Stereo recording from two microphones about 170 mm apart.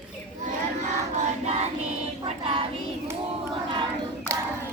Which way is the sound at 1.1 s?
40° right (ahead or behind).